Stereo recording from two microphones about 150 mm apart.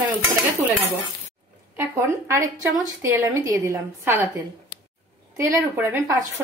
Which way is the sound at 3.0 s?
20° right (ahead or behind).